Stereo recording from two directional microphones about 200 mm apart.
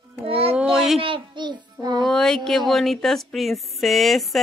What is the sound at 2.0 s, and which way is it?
Speech, 5° left (ahead or behind).